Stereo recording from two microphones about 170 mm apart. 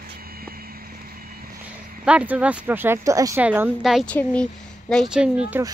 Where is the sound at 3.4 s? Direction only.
10° right (ahead or behind).